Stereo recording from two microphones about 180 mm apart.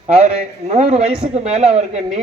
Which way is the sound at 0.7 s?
40° right (ahead or behind).